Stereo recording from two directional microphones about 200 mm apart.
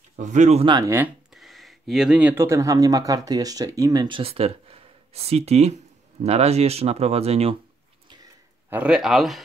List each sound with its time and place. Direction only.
0.1 s speech: 40° right (ahead or behind)
8.6 s a man's voice: 5° right (ahead or behind)